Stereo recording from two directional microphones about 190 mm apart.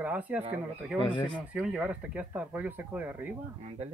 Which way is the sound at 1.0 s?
25° left (ahead or behind).